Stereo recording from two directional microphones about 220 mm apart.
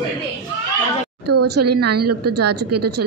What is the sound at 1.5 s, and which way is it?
Speech, 90° right.